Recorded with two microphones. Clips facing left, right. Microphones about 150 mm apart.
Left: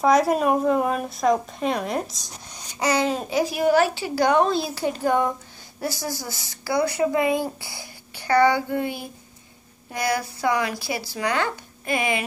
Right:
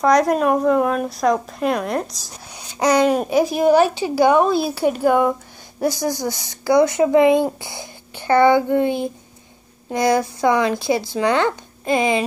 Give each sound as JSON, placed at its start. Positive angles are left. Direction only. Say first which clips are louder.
{"t": 0.0, "sound": "speech", "louder": "right 3 dB", "side_deg": 5}
{"t": 2.8, "sound": "a woman's voice", "louder": "right 7 dB", "side_deg": -15}